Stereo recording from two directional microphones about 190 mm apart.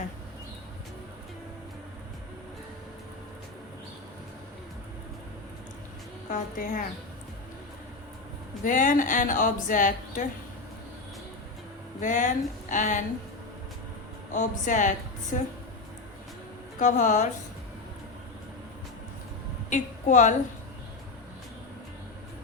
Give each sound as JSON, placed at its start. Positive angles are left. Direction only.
{"t": 6.3, "sound": "speech", "side_deg": 45}
{"t": 8.6, "sound": "speech", "side_deg": 45}
{"t": 11.9, "sound": "speech", "side_deg": 40}
{"t": 14.3, "sound": "speech", "side_deg": 40}
{"t": 16.8, "sound": "speech", "side_deg": 40}
{"t": 19.7, "sound": "a woman's voice", "side_deg": 40}